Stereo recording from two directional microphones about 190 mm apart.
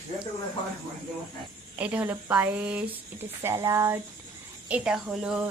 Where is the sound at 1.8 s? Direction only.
10° right (ahead or behind).